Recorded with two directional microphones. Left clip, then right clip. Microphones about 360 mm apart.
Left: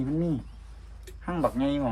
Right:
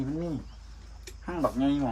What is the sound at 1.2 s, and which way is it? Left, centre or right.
Speech, left.